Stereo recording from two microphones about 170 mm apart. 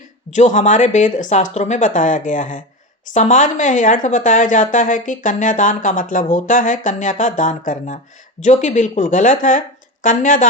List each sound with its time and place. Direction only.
0.3 s speech: 45° left (ahead or behind)